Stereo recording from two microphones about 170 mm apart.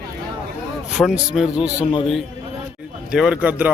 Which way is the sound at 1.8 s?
30° left (ahead or behind).